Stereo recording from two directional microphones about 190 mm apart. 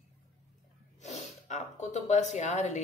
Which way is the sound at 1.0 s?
40° left (ahead or behind).